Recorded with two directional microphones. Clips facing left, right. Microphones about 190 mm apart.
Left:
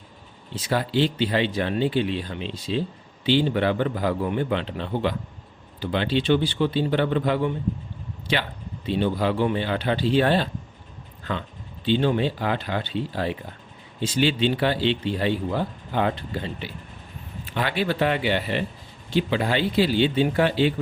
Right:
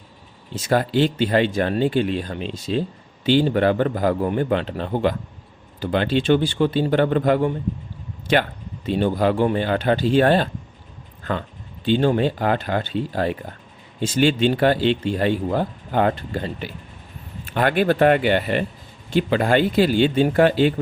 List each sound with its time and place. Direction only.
0.5 s speech: 50° right (ahead or behind)
11.2 s a sound: 50° right (ahead or behind)
11.9 s speech: 45° right (ahead or behind)